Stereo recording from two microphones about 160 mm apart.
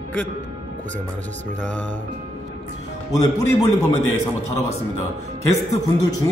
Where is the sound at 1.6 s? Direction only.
10° left (ahead or behind).